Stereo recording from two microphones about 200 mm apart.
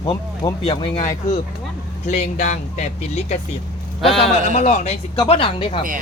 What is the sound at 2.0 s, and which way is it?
Speech, 35° left (ahead or behind).